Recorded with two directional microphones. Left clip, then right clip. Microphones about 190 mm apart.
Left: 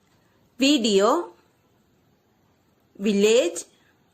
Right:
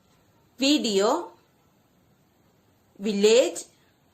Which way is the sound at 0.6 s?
30° left (ahead or behind).